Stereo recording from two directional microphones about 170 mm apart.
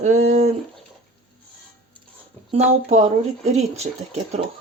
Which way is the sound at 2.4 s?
40° right (ahead or behind).